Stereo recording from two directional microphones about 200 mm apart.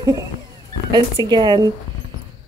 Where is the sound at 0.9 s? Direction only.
20° right (ahead or behind).